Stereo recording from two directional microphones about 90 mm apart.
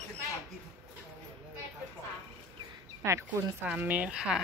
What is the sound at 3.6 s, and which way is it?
Speech, 20° right (ahead or behind).